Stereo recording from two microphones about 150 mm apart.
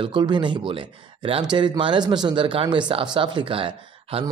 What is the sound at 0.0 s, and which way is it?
Speech, 30° right (ahead or behind).